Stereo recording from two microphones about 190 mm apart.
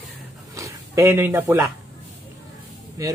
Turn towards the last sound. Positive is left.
turn(degrees=-15)  # may be behind; listen again after turning